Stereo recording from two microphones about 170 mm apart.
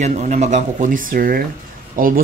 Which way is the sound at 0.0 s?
45° right (ahead or behind).